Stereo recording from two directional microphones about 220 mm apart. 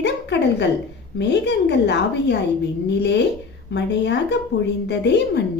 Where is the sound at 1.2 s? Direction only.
50° left (ahead or behind).